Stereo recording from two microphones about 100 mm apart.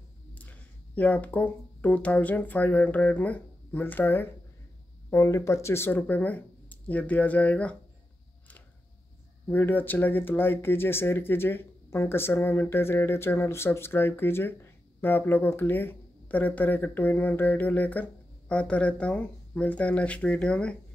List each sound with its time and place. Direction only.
0.3 s speech: 15° left (ahead or behind)
5.1 s speech: 30° left (ahead or behind); by 7.7 s 15° left (ahead or behind)
9.5 s speech: 20° left (ahead or behind)